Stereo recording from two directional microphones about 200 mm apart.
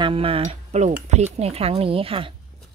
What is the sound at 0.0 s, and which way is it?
A woman's voice, 30° right (ahead or behind).